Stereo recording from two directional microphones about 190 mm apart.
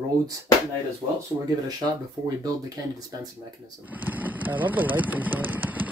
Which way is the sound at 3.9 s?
10° right (ahead or behind).